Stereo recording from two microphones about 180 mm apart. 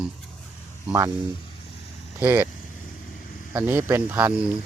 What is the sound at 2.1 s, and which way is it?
Speech, 10° right (ahead or behind).